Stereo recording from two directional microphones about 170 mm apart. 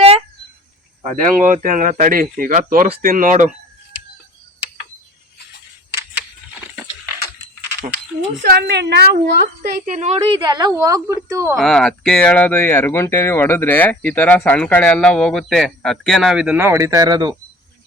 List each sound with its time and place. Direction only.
1.0 s speech: 50° right (ahead or behind)
7.0 s a sound: 15° right (ahead or behind)
8.4 s a woman's voice: 70° right (ahead or behind)
9.8 s a woman's voice: 45° right (ahead or behind); by 11.5 s 20° right (ahead or behind)
11.5 s speech: 5° left (ahead or behind)
16.6 s speech: 15° right (ahead or behind)